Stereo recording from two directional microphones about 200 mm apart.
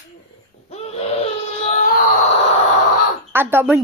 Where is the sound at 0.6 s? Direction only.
30° left (ahead or behind).